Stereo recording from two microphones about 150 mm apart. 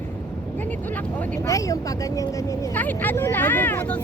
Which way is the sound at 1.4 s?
20° left (ahead or behind).